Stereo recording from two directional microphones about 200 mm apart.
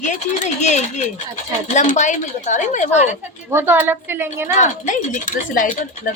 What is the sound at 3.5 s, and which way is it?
Speech, 10° right (ahead or behind).